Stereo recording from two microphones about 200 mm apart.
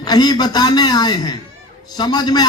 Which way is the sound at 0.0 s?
20° left (ahead or behind).